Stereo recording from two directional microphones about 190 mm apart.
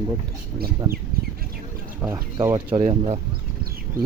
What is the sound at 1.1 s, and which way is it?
Bird, 50° right (ahead or behind).